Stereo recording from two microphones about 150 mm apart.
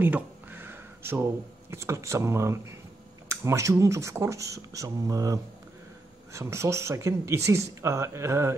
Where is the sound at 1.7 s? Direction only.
20° right (ahead or behind).